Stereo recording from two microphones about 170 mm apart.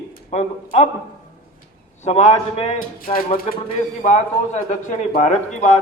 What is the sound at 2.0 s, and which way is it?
Speech, 40° left (ahead or behind).